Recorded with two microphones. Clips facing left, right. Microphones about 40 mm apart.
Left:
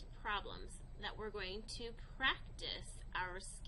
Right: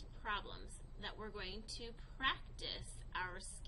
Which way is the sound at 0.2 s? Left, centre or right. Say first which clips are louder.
Left 1 dB; centre.